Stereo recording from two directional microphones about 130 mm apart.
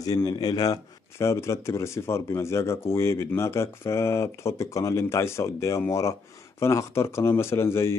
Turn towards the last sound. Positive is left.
turn(degrees=20)  # may be behind; listen again after turning